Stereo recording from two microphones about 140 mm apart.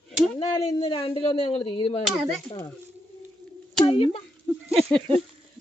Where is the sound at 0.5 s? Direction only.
25° left (ahead or behind).